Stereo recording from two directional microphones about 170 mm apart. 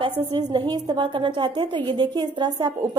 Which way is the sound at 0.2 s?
30° right (ahead or behind).